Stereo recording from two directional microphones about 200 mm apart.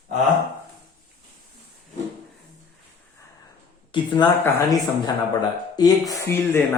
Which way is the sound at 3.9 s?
25° left (ahead or behind).